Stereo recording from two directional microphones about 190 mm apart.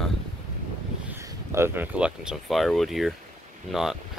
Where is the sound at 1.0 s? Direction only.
10° right (ahead or behind).